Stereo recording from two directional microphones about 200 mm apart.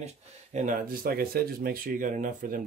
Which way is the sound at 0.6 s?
45° right (ahead or behind).